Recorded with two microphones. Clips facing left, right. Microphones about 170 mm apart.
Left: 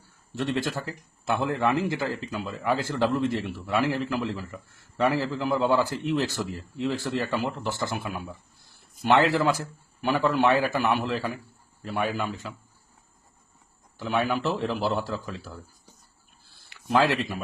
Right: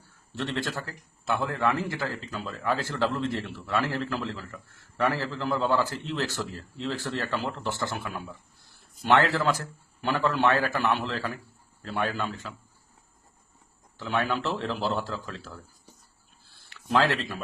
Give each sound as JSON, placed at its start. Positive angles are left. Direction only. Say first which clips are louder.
{"t": 0.3, "sound": "a man's voice", "louder": "left 3 dB", "side_deg": 15}
{"t": 14.1, "sound": "a man's voice", "louder": "left 2 dB", "side_deg": 10}
{"t": 16.6, "sound": "speech", "louder": "left 2 dB", "side_deg": 10}